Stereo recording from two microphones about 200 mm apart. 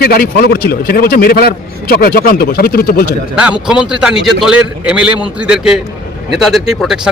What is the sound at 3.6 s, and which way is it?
Speech, 5° right (ahead or behind).